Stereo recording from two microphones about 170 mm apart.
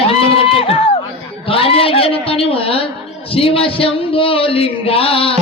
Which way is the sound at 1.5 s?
35° left (ahead or behind).